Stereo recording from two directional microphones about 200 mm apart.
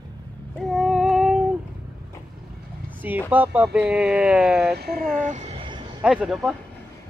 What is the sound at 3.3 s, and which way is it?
Music, 10° right (ahead or behind).